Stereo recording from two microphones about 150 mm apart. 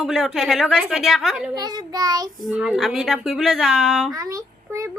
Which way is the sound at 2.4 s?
5° right (ahead or behind).